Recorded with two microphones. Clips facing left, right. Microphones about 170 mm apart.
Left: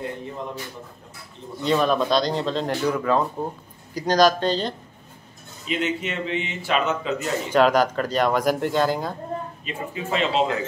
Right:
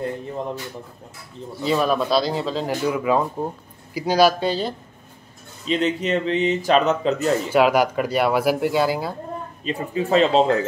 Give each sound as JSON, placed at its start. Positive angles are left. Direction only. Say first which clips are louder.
{"t": 1.6, "sound": "speech", "louder": "even", "side_deg": -5}
{"t": 5.7, "sound": "a man's voice", "louder": "right 5 dB", "side_deg": -35}
{"t": 7.4, "sound": "speech", "louder": "left 1 dB", "side_deg": -10}
{"t": 9.7, "sound": "a man's voice", "louder": "right 7 dB", "side_deg": -35}